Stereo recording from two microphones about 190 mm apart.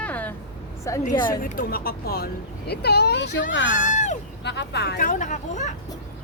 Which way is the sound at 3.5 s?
75° left (ahead or behind).